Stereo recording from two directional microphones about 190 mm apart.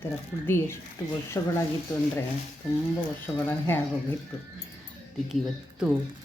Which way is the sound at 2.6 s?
5° right (ahead or behind).